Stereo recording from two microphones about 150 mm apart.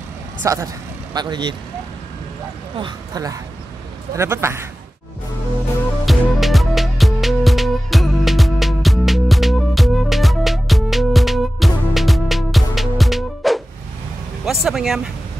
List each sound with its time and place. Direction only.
0.4 s speech: 20° right (ahead or behind)
1.1 s speech: 30° right (ahead or behind)
2.8 s a man's voice: 25° right (ahead or behind)
6.0 s music: centre (ahead or behind)
14.4 s vehicle: centre (ahead or behind)